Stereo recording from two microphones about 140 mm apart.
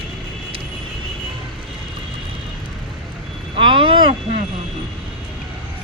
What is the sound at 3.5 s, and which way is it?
Vehicle, 40° right (ahead or behind).